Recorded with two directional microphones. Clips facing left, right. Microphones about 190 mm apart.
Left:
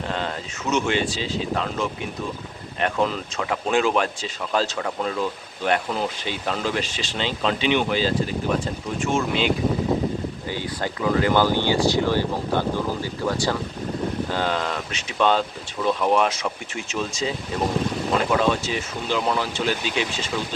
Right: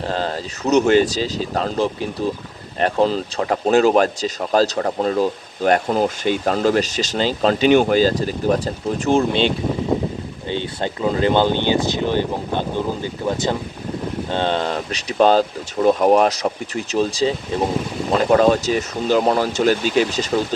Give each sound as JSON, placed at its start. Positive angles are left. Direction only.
{"t": 0.1, "sound": "speech", "side_deg": -35}
{"t": 10.5, "sound": "speech", "side_deg": -25}